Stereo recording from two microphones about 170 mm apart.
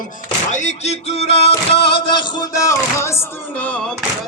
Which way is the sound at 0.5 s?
45° left (ahead or behind).